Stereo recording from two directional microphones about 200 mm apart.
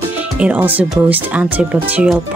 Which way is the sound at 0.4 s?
5° right (ahead or behind).